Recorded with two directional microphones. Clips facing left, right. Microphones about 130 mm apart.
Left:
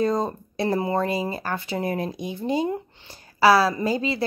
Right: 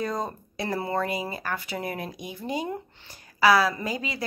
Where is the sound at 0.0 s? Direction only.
25° left (ahead or behind).